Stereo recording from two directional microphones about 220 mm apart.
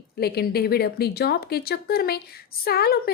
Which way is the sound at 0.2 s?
45° left (ahead or behind).